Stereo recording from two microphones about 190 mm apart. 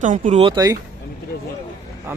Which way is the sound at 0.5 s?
20° right (ahead or behind).